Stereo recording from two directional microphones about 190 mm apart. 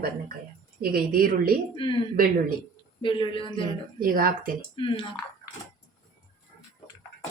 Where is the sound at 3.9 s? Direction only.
50° right (ahead or behind).